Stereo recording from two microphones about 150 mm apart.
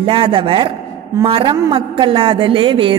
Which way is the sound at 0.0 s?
35° right (ahead or behind).